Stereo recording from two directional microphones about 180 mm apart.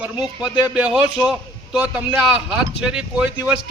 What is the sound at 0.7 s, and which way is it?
A man's voice, 5° right (ahead or behind).